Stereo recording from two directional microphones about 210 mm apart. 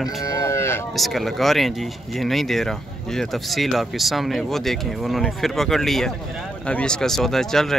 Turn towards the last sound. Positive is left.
turn(degrees=0)  # may be behind; listen again after turning